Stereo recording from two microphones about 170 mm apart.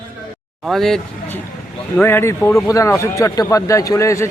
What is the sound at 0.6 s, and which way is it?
Speech, centre (ahead or behind).